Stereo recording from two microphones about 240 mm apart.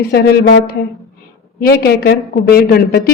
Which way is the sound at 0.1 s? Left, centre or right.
Left.